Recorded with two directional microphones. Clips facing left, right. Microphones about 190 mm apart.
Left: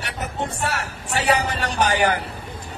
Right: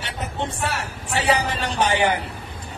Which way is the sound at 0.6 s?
Centre (ahead or behind).